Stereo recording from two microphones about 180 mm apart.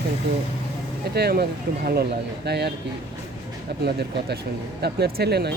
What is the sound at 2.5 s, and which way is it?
Speech, 65° right (ahead or behind).